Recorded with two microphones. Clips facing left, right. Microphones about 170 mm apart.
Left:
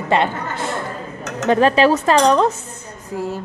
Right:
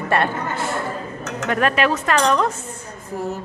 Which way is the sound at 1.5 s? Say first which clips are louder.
Left 6 dB; 30° left (ahead or behind).